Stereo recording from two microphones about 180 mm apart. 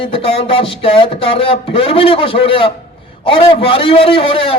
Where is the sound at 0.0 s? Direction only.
30° left (ahead or behind).